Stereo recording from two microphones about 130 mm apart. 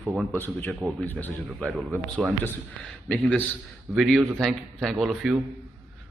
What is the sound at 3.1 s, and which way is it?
A man's voice, 5° left (ahead or behind).